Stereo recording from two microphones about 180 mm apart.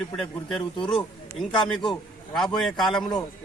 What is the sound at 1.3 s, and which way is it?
Speech, 25° left (ahead or behind).